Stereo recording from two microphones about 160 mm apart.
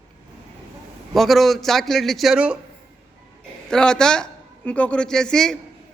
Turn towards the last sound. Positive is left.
turn(degrees=5)  # may be behind; listen again after turning